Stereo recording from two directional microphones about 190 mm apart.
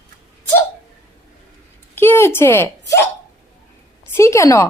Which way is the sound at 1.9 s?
10° left (ahead or behind).